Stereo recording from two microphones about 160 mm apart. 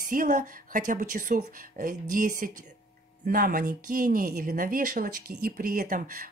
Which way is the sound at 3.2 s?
65° right (ahead or behind).